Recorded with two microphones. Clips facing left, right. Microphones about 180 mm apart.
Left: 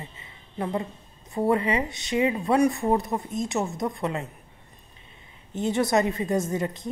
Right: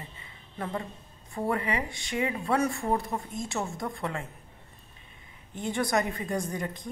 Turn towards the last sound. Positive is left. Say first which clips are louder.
# left 6 dB
turn(degrees=25)  # may be behind; listen again after turning